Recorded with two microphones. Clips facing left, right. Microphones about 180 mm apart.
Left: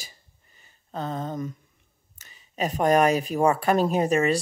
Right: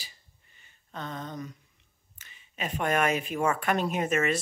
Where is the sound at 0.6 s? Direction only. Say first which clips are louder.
Left 7 dB; 35° left (ahead or behind).